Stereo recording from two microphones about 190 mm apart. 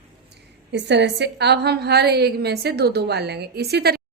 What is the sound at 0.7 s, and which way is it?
A woman's voice, 65° right (ahead or behind).